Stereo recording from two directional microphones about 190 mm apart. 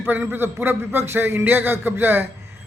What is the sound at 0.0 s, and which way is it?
A man's voice, 10° right (ahead or behind).